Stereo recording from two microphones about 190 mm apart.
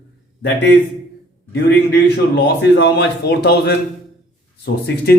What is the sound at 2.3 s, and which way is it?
A man's voice, 65° left (ahead or behind).